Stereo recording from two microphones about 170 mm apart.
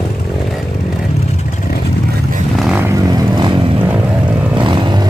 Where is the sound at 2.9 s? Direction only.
20° right (ahead or behind).